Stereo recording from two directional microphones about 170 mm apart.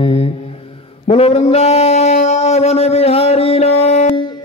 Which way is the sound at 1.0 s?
35° left (ahead or behind).